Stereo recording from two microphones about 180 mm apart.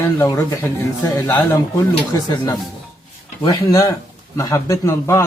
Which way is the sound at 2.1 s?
25° left (ahead or behind).